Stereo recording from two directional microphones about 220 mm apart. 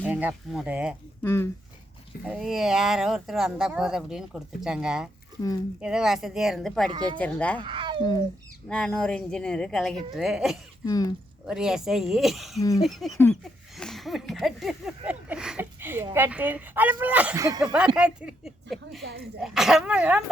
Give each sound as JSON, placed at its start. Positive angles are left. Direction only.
{"t": 0.0, "sound": "speech", "side_deg": -5}
{"t": 1.2, "sound": "speech", "side_deg": 10}
{"t": 2.2, "sound": "speech", "side_deg": -5}
{"t": 5.4, "sound": "speech", "side_deg": 20}
{"t": 5.8, "sound": "speech", "side_deg": -5}
{"t": 6.9, "sound": "speech", "side_deg": -20}
{"t": 7.2, "sound": "speech", "side_deg": 5}
{"t": 7.6, "sound": "a sound", "side_deg": -20}
{"t": 8.7, "sound": "speech", "side_deg": 5}
{"t": 10.8, "sound": "speech", "side_deg": 15}
{"t": 11.4, "sound": "speech", "side_deg": -5}
{"t": 17.7, "sound": "speech", "side_deg": -5}